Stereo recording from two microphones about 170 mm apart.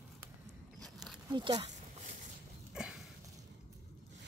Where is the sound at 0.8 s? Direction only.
Centre (ahead or behind).